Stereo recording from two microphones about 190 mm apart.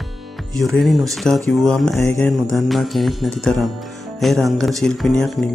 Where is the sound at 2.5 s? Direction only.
Centre (ahead or behind).